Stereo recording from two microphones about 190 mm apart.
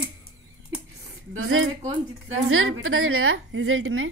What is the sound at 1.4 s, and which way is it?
A woman's voice, 90° right.